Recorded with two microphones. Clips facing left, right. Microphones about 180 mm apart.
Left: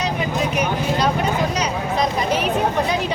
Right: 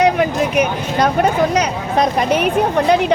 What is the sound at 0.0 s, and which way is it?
Speech, 65° right (ahead or behind).